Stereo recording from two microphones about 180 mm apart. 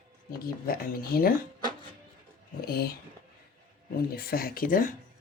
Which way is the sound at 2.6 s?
55° left (ahead or behind).